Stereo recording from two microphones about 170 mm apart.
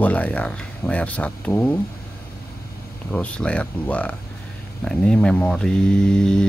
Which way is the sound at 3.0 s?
5° left (ahead or behind).